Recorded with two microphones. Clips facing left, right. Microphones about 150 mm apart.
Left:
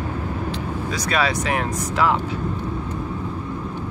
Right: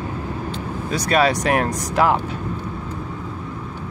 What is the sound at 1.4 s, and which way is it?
Speech, 55° right (ahead or behind).